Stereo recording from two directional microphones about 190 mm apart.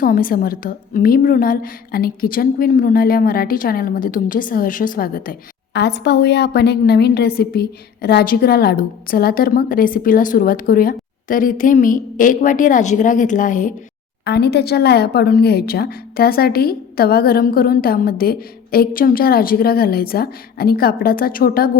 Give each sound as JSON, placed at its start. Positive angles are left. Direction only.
{"t": 0.0, "sound": "a woman's voice", "side_deg": 50}
{"t": 14.3, "sound": "a woman's voice", "side_deg": 60}